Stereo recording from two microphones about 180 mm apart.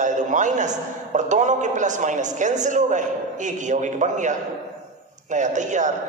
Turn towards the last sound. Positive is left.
turn(degrees=-40)  # may be behind; listen again after turning